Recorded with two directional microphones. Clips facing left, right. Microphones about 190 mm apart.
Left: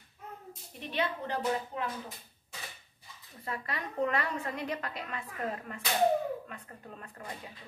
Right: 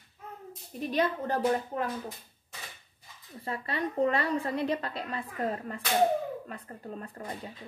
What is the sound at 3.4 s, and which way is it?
A woman's voice, 30° right (ahead or behind).